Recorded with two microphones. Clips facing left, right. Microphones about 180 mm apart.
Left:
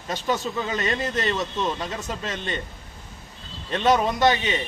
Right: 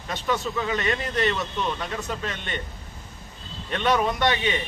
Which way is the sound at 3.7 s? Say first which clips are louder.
Left 2 dB; 30° left (ahead or behind).